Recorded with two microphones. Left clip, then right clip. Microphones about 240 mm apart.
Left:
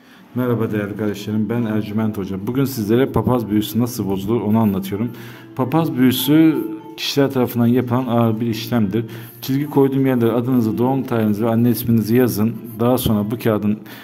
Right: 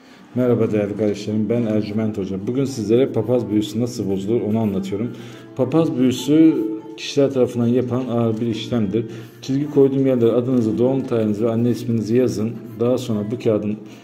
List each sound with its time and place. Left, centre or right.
0.4 s a man's voice: centre; by 13.7 s left